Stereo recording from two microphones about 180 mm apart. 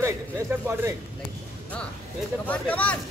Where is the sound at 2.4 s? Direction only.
5° left (ahead or behind).